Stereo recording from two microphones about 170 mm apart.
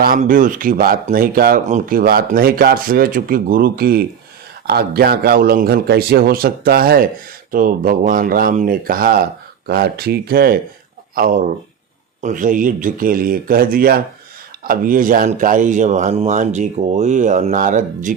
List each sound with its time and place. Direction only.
0.0 s a man's voice: 55° right (ahead or behind)